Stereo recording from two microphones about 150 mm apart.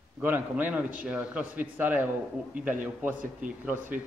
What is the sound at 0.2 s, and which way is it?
Speech, 10° right (ahead or behind).